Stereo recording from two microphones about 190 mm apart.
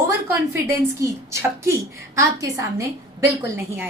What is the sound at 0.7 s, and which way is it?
A woman's voice, 15° right (ahead or behind).